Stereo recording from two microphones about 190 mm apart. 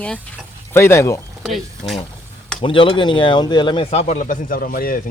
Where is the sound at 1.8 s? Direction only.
30° left (ahead or behind).